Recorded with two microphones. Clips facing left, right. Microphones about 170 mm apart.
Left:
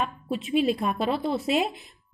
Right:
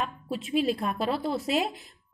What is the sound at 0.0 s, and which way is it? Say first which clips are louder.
A woman's voice: left 3 dB; 15° left (ahead or behind).